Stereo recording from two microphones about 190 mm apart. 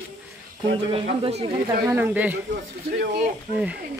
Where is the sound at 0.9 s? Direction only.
30° right (ahead or behind).